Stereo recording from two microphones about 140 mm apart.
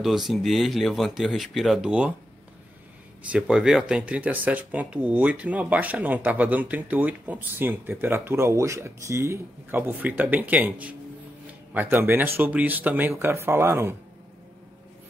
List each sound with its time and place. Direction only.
0.0 s speech: centre (ahead or behind)
3.3 s speech: 5° right (ahead or behind)